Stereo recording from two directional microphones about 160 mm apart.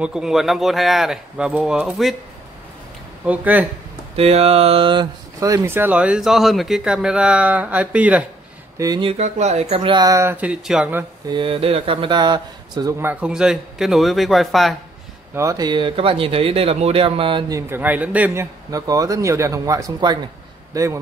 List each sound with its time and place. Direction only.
0.0 s speech: 5° right (ahead or behind)
3.3 s speech: 10° right (ahead or behind)
4.2 s speech: 40° right (ahead or behind); by 8.3 s 10° right (ahead or behind)
8.7 s speech: 25° right (ahead or behind)
9.1 s speech: 45° right (ahead or behind)
9.8 s speech: 25° right (ahead or behind); by 11.1 s 10° right (ahead or behind)
11.2 s speech: 30° right (ahead or behind)
13.0 s speech: 10° right (ahead or behind)
15.3 s speech: 20° right (ahead or behind)
17.6 s speech: 15° right (ahead or behind)